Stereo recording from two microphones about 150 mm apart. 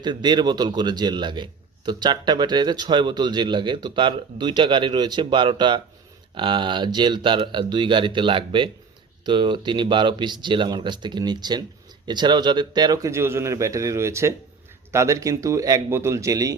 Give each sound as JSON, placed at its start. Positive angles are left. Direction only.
{"t": 0.0, "sound": "a man's voice", "side_deg": -30}